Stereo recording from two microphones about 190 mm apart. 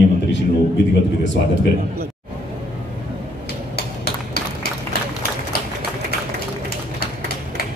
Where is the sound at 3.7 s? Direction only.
55° left (ahead or behind).